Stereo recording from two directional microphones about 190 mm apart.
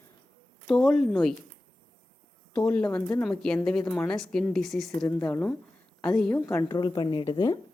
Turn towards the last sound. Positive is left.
turn(degrees=25)  # may be behind; listen again after turning